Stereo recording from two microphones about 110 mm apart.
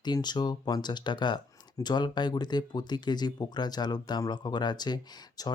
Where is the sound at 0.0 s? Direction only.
40° left (ahead or behind).